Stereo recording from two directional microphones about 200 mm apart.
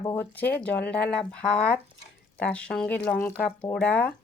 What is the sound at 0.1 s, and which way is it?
Speech, 10° left (ahead or behind).